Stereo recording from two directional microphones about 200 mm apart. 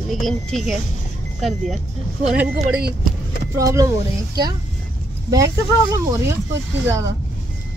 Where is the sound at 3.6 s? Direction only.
15° right (ahead or behind).